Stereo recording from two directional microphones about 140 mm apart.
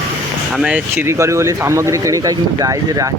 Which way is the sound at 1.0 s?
20° right (ahead or behind).